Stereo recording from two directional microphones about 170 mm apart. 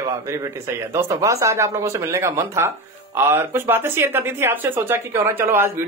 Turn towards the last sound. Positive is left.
turn(degrees=-10)  # may be behind; listen again after turning